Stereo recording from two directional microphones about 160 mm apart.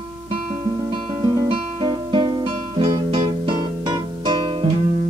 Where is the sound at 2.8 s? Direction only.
30° right (ahead or behind).